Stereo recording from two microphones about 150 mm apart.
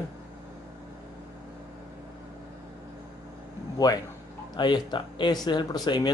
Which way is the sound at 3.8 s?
25° left (ahead or behind).